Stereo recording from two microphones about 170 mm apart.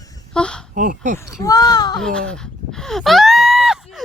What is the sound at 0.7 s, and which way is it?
Speech, 50° right (ahead or behind).